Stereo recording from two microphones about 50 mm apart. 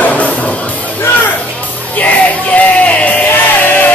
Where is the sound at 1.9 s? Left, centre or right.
Left.